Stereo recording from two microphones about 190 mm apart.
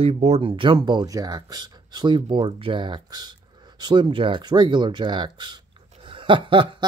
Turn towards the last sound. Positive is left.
turn(degrees=-25)  # may be behind; listen again after turning